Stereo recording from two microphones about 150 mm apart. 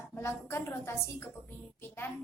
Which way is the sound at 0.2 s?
15° left (ahead or behind).